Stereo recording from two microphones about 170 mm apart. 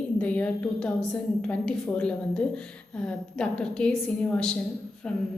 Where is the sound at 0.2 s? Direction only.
10° left (ahead or behind).